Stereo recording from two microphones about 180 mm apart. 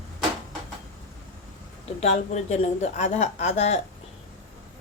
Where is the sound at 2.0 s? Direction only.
40° left (ahead or behind).